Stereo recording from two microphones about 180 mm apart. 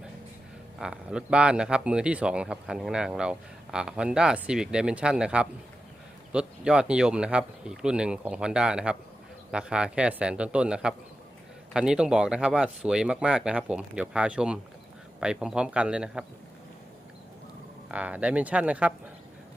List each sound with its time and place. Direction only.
0.8 s speech: 5° right (ahead or behind)
17.8 s speech: 10° right (ahead or behind)